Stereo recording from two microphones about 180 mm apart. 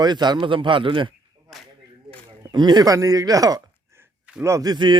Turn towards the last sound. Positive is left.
turn(degrees=-25)  # may be behind; listen again after turning